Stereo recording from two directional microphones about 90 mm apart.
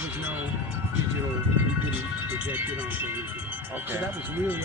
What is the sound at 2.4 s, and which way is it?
Speech, 20° right (ahead or behind).